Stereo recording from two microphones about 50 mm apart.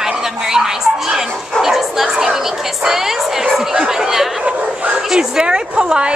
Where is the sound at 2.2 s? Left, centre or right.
Centre.